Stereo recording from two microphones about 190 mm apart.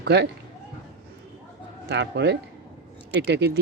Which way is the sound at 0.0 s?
65° right (ahead or behind).